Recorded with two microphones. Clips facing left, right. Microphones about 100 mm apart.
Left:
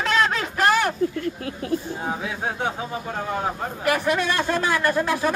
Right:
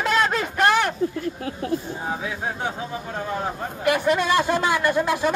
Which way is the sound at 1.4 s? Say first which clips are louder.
Right 1 dB; 30° right (ahead or behind).